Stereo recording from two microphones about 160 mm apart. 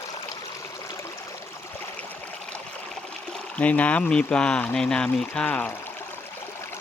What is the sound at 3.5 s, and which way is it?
Speech, 10° left (ahead or behind).